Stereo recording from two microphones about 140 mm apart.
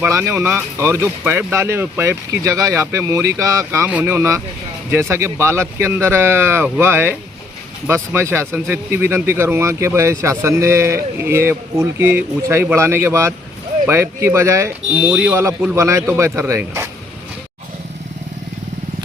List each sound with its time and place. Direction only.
0.0 s speech: 20° right (ahead or behind)
15.1 s speech: 5° right (ahead or behind)
15.7 s speech: 20° right (ahead or behind)